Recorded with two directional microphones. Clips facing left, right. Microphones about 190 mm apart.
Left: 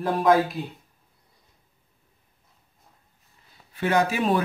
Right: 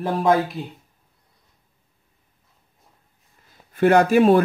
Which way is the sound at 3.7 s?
50° right (ahead or behind).